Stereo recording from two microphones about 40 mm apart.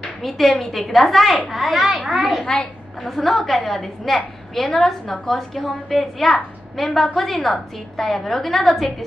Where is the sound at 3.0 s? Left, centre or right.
Centre.